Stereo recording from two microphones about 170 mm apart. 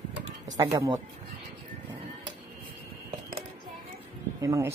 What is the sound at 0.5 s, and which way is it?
Speech, 20° right (ahead or behind).